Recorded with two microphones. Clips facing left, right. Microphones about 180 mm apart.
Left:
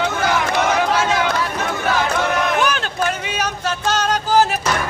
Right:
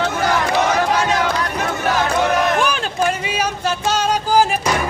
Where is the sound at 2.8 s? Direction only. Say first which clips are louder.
Right 2 dB; 5° right (ahead or behind).